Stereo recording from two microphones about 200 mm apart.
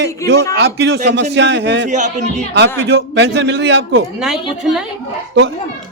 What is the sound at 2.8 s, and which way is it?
A man's voice, 60° right (ahead or behind).